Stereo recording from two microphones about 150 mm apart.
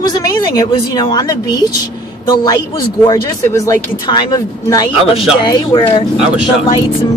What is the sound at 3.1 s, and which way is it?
Speech, 25° left (ahead or behind).